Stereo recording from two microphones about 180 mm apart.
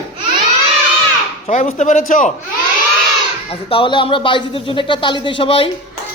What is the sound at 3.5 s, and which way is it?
Speech, 30° left (ahead or behind).